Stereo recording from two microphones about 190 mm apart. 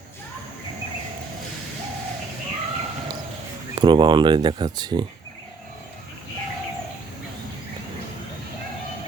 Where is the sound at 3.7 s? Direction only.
25° right (ahead or behind).